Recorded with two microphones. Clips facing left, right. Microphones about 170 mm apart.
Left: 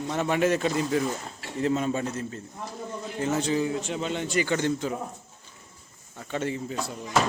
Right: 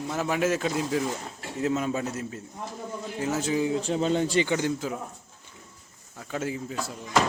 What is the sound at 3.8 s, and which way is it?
Speech, 35° right (ahead or behind).